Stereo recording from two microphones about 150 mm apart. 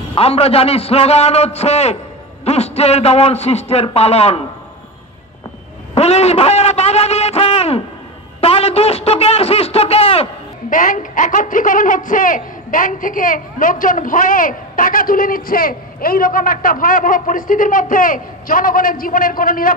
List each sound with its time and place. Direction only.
0.1 s a man's voice: 40° left (ahead or behind)
5.9 s a sound: 45° left (ahead or behind)
8.4 s a man's voice: 40° left (ahead or behind)
10.7 s a woman's voice: 60° left (ahead or behind)